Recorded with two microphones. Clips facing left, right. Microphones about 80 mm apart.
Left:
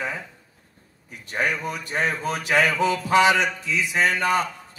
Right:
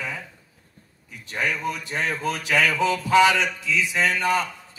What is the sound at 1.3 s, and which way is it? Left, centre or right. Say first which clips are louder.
A man's voice: left 1 dB; left.